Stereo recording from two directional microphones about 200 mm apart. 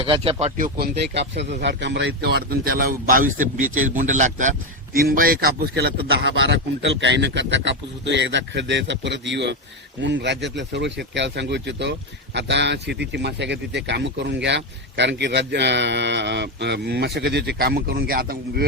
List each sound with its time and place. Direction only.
0.0 s speech: 30° right (ahead or behind)
0.9 s speech: 60° right (ahead or behind)